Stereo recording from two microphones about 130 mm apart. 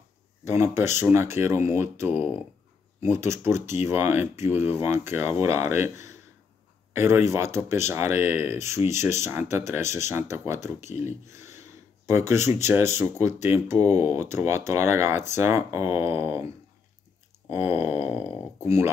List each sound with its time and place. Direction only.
0.5 s speech: 20° right (ahead or behind)
10.8 s speech: 60° left (ahead or behind)
11.1 s speech: 20° right (ahead or behind)
12.5 s speech: 20° right (ahead or behind)
13.7 s speech: 55° left (ahead or behind)
14.1 s speech: 20° right (ahead or behind)
17.5 s speech: 15° right (ahead or behind)